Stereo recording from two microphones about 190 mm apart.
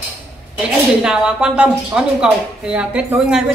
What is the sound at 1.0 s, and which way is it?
A woman's voice, 5° right (ahead or behind).